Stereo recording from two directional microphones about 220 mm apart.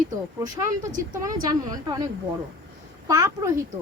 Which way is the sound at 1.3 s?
15° right (ahead or behind).